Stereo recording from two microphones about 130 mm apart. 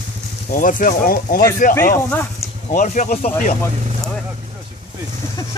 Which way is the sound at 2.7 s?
75° left (ahead or behind).